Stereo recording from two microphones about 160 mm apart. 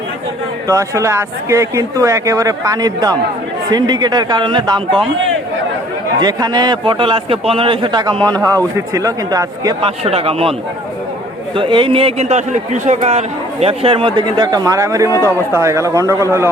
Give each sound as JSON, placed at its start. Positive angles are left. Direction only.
{"t": 0.7, "sound": "speech", "side_deg": -20}
{"t": 6.1, "sound": "a man's voice", "side_deg": -25}
{"t": 9.8, "sound": "a man's voice", "side_deg": -40}
{"t": 11.5, "sound": "a man's voice", "side_deg": -30}